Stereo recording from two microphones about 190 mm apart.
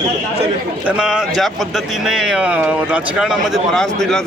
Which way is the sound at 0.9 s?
5° right (ahead or behind).